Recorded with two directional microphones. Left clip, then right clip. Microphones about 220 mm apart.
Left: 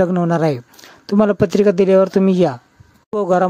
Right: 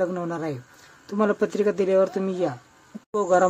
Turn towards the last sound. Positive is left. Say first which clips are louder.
# left 4 dB
turn(degrees=40)  # may be behind; listen again after turning